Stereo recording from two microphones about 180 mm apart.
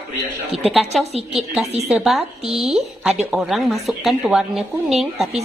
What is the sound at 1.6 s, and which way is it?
Speech, 35° right (ahead or behind).